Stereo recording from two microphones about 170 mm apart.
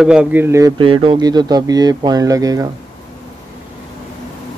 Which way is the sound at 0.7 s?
30° right (ahead or behind).